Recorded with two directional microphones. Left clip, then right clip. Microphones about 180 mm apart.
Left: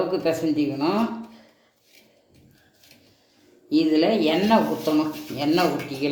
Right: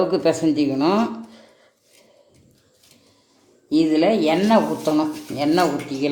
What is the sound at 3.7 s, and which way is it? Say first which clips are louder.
Speech: right 2 dB; 40° right (ahead or behind).